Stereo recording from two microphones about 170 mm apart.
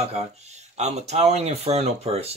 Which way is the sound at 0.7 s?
40° right (ahead or behind).